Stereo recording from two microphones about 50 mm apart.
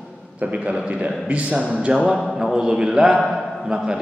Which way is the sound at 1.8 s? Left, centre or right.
Centre.